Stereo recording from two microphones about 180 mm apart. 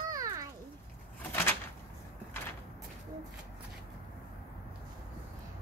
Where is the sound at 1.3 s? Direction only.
10° left (ahead or behind).